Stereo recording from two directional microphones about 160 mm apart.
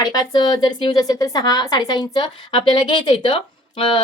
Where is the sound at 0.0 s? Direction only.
25° left (ahead or behind).